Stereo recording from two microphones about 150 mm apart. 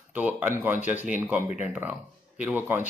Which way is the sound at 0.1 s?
10° right (ahead or behind).